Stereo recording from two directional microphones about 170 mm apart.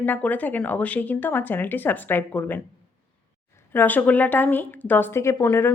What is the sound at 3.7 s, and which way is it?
A woman's voice, 10° left (ahead or behind).